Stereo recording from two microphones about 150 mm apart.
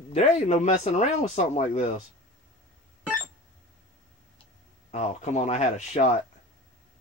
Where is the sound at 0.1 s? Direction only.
50° left (ahead or behind).